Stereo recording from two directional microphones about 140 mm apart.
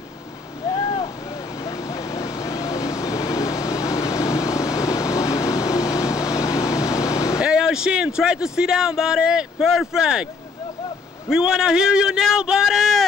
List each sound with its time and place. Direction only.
0.7 s vehicle: 25° left (ahead or behind)
7.3 s speech: 5° right (ahead or behind)
11.2 s speech: 5° right (ahead or behind)